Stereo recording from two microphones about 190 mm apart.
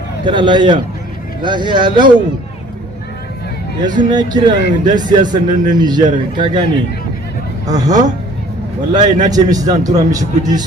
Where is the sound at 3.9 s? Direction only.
20° right (ahead or behind).